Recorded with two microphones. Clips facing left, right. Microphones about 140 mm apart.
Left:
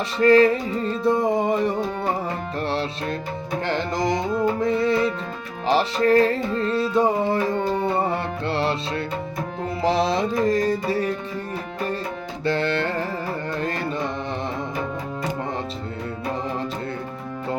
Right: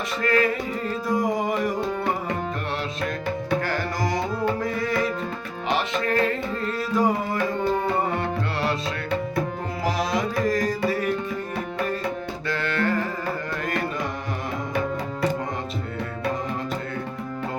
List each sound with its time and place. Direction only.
0.2 s music: 30° left (ahead or behind)
3.7 s music: 25° left (ahead or behind)
9.8 s music: 30° left (ahead or behind)
12.5 s carnatic music: 30° left (ahead or behind)